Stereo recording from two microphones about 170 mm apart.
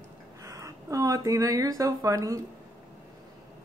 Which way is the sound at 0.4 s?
20° right (ahead or behind).